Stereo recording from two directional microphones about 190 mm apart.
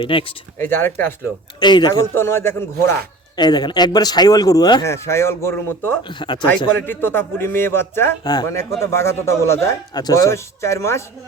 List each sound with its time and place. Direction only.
0.0 s speech: 25° left (ahead or behind)
0.6 s a man's voice: 10° left (ahead or behind)
1.5 s a man's voice: 25° left (ahead or behind)
6.0 s speech: 25° left (ahead or behind)
6.8 s a man's voice: 10° left (ahead or behind)